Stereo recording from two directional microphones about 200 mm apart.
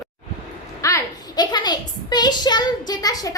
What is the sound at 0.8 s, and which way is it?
A woman's voice, 15° left (ahead or behind).